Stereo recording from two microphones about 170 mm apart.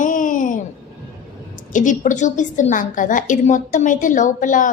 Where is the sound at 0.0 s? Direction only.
50° left (ahead or behind).